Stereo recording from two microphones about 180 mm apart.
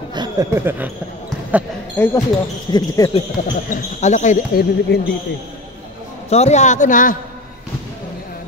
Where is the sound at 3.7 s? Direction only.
40° left (ahead or behind).